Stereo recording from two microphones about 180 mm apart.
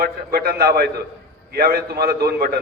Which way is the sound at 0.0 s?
60° right (ahead or behind).